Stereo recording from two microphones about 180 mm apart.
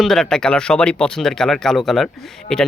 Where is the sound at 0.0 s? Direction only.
Centre (ahead or behind).